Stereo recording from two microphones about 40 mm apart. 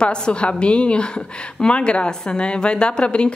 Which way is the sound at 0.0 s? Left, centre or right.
Left.